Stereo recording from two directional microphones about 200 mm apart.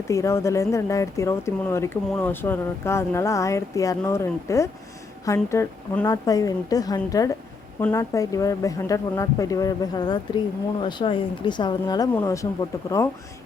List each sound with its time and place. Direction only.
0.1 s speech: 15° left (ahead or behind)